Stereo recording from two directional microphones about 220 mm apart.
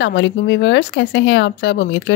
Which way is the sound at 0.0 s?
55° left (ahead or behind).